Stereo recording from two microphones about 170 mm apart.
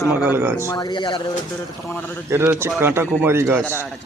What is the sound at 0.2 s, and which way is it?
Speech, 10° right (ahead or behind).